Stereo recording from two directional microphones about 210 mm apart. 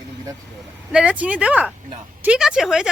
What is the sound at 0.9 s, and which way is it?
Speech, 5° right (ahead or behind).